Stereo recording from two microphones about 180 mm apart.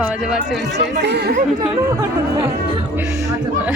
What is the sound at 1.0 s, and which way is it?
Speech, 65° right (ahead or behind).